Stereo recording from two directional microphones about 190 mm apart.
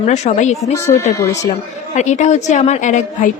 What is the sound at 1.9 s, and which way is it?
A woman's voice, 40° left (ahead or behind).